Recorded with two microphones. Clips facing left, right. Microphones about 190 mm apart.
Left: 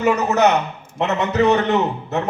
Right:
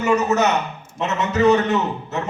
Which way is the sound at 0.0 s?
60° left (ahead or behind).